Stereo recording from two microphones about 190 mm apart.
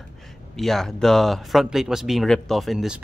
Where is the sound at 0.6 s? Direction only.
Centre (ahead or behind).